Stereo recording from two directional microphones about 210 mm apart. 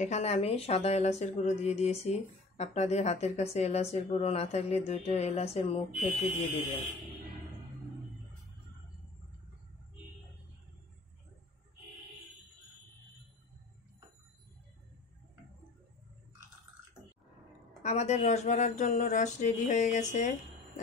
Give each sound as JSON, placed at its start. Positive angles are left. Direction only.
{"t": 0.0, "sound": "speech", "side_deg": 30}
{"t": 17.8, "sound": "speech", "side_deg": 30}